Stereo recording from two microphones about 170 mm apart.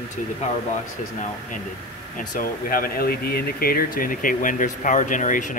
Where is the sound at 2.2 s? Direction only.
55° left (ahead or behind).